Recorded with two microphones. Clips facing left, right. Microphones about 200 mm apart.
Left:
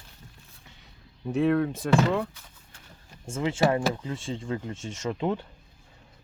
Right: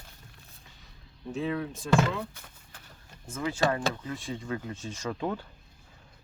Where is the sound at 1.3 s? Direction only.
60° left (ahead or behind).